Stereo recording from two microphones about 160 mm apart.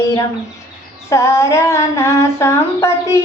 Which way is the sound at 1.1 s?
20° left (ahead or behind).